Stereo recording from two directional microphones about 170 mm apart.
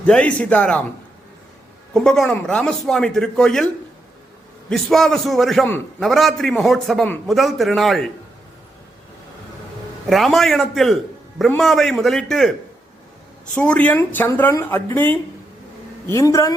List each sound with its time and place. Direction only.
0.0 s speech: 5° left (ahead or behind)
1.9 s a man's voice: 5° left (ahead or behind)
4.7 s a man's voice: centre (ahead or behind)
10.1 s a man's voice: centre (ahead or behind)
13.6 s a man's voice: 10° left (ahead or behind)